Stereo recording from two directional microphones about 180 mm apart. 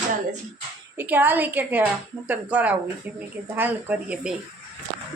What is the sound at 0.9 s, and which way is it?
A woman's voice, 10° right (ahead or behind).